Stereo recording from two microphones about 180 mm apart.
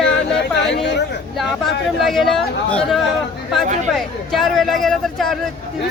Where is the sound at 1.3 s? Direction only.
Centre (ahead or behind).